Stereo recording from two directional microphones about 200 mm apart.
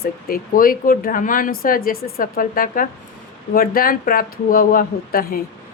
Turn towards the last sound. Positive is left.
turn(degrees=50)  # may be behind; listen again after turning